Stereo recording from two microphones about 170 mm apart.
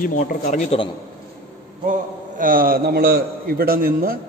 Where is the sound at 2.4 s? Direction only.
55° right (ahead or behind).